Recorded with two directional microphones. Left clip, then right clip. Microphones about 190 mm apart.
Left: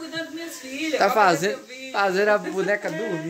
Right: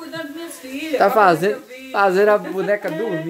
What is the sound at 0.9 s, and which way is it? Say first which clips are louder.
Speech: right 5 dB; 25° right (ahead or behind).